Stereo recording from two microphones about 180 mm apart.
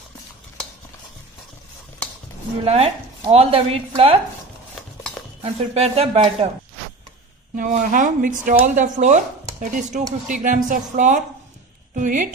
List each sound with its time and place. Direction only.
2.6 s speech: 35° right (ahead or behind)
5.4 s speech: 35° right (ahead or behind)
7.5 s a woman's voice: 45° right (ahead or behind)